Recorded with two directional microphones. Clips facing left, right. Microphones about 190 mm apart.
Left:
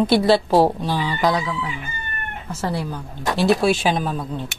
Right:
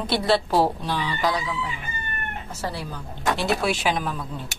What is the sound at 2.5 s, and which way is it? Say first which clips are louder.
Speech: left 7 dB; 50° left (ahead or behind).